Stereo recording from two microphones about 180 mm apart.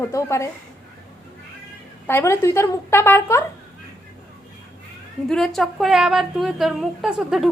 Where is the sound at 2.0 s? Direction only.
15° left (ahead or behind).